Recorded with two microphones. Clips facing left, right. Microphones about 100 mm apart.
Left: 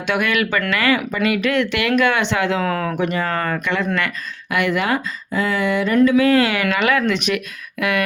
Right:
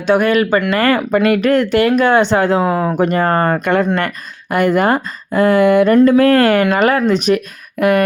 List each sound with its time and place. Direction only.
0.1 s speech: 40° right (ahead or behind)
2.6 s speech: 25° right (ahead or behind)
2.9 s speech: 45° right (ahead or behind)